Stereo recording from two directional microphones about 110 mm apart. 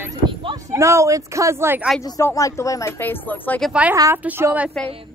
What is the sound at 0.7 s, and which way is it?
Speech, 25° right (ahead or behind).